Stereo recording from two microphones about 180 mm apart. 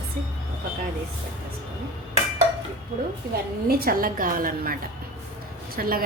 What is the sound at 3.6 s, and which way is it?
A woman's voice, 55° right (ahead or behind).